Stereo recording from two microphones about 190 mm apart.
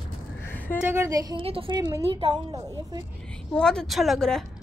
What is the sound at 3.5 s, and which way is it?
Speech, 5° left (ahead or behind).